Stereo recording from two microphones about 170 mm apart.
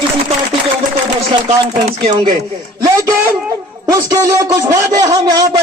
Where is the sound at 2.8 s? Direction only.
20° right (ahead or behind).